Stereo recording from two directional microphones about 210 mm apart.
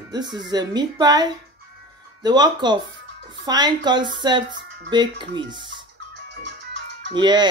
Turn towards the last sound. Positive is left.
turn(degrees=-20)  # may be behind; listen again after turning